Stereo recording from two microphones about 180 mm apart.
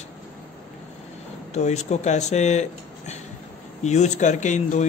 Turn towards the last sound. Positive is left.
turn(degrees=40)  # may be behind; listen again after turning